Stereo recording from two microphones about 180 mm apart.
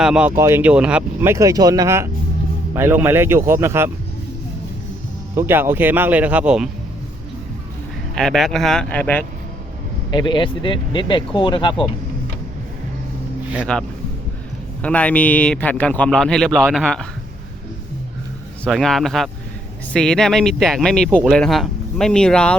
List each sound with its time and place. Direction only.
0.0 s speech: 5° right (ahead or behind)
5.3 s speech: 10° right (ahead or behind)
8.1 s speech: centre (ahead or behind)
10.1 s speech: 25° left (ahead or behind)
13.7 s a man's voice: 5° left (ahead or behind)
18.6 s speech: centre (ahead or behind)